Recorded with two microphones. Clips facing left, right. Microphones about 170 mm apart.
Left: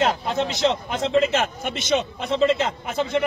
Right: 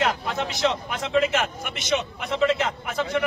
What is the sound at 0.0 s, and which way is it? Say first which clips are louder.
Speech: left 3 dB; 25° left (ahead or behind).